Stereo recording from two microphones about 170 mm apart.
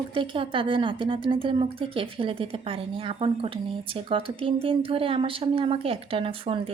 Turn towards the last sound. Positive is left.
turn(degrees=-35)  # may be behind; listen again after turning